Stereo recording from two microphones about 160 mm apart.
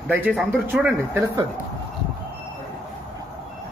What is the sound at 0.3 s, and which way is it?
Speech, 5° left (ahead or behind).